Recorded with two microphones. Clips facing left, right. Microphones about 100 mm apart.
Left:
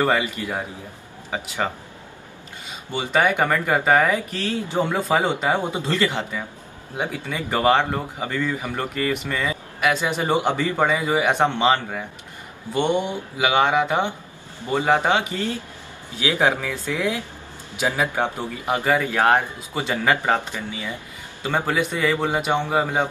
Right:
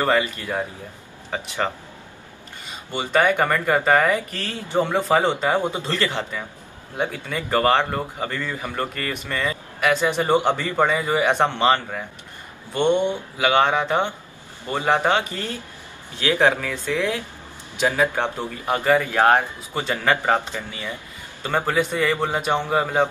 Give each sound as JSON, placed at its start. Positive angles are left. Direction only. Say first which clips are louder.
{"t": 0.0, "sound": "speech", "louder": "even", "side_deg": 15}
{"t": 2.9, "sound": "speech", "louder": "right 1 dB", "side_deg": 10}
{"t": 4.7, "sound": "speech", "louder": "right 3 dB", "side_deg": -20}
{"t": 5.0, "sound": "speech", "louder": "right 1 dB", "side_deg": 10}
{"t": 20.2, "sound": "a man's voice", "louder": "right 1 dB", "side_deg": -15}
{"t": 21.4, "sound": "speech", "louder": "right 1 dB", "side_deg": 10}